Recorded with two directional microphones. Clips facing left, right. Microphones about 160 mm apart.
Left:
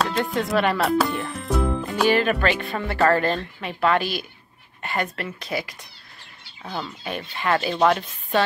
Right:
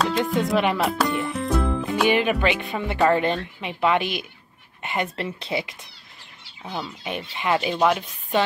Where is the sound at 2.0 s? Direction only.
15° right (ahead or behind).